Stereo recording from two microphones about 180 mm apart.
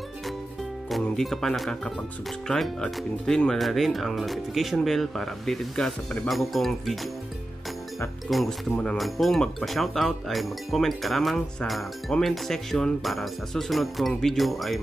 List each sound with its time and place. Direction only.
0.8 s speech: centre (ahead or behind)
8.3 s speech: centre (ahead or behind)